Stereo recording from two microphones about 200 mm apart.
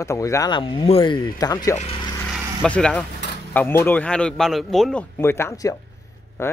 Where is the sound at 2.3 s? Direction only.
5° left (ahead or behind).